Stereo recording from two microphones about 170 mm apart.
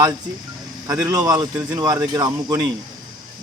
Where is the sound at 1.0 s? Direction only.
20° right (ahead or behind).